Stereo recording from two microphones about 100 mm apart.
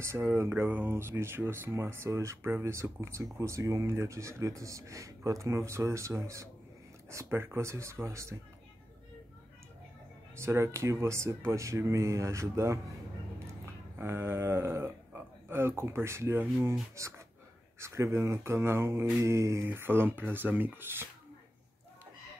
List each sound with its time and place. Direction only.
0.0 s speech: 25° right (ahead or behind)
10.3 s speech: 25° right (ahead or behind)
13.9 s speech: 25° right (ahead or behind)